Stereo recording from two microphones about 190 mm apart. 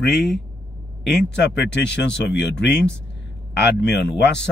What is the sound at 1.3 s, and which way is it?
Speech, 65° left (ahead or behind).